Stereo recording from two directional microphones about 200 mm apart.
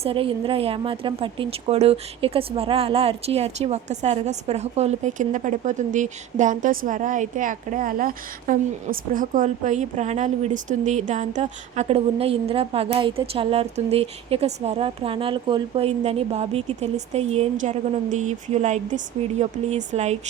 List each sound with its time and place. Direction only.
0.0 s a woman's voice: 25° right (ahead or behind)